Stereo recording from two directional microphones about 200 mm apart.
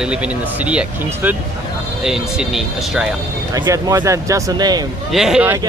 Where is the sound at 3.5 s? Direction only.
15° right (ahead or behind).